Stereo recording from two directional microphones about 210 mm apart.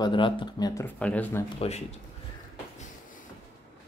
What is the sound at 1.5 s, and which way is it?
Speech, 30° left (ahead or behind).